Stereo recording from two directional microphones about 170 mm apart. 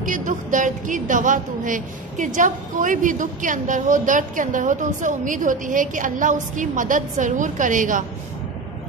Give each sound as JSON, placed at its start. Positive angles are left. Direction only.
{"t": 0.0, "sound": "a woman's voice", "side_deg": -50}